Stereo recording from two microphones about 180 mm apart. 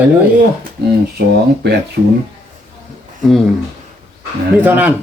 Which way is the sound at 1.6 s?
65° right (ahead or behind).